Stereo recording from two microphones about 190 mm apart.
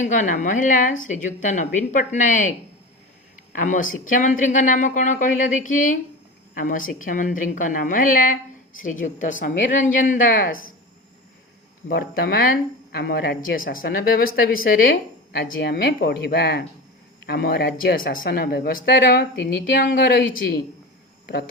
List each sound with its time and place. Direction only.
0.0 s speech: 40° left (ahead or behind)
3.5 s speech: 45° left (ahead or behind)
11.9 s a man's voice: 55° left (ahead or behind)